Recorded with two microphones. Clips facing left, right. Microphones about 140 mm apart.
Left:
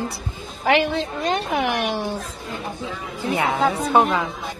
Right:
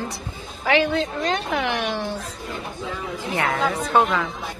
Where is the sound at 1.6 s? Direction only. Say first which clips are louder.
Left 2 dB; 50° left (ahead or behind).